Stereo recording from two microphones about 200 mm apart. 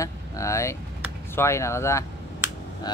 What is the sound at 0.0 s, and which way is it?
Vehicle, 15° left (ahead or behind).